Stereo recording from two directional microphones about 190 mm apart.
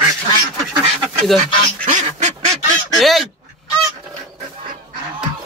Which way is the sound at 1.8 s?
40° right (ahead or behind).